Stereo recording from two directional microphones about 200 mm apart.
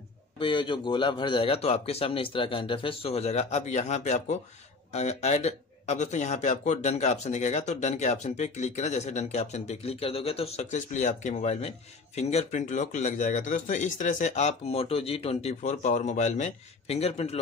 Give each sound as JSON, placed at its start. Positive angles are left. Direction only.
{"t": 0.4, "sound": "a man's voice", "side_deg": 25}